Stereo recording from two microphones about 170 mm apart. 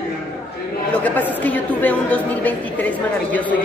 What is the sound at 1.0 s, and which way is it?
A woman's voice, 10° left (ahead or behind).